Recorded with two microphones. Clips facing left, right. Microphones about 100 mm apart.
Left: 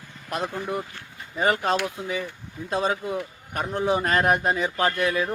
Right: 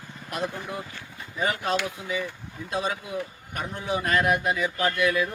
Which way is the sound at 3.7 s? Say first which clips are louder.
Left 3 dB; 40° left (ahead or behind).